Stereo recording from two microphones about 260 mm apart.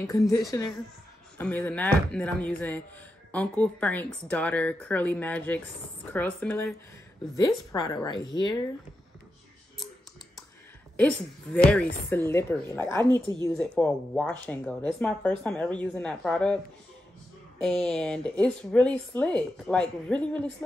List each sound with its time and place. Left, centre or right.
0.3 s speech: centre
11.0 s speech: centre
13.0 s a woman's voice: centre
13.6 s speech: centre
17.6 s speech: centre